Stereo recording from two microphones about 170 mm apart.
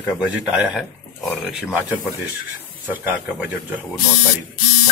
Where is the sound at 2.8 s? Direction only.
10° right (ahead or behind).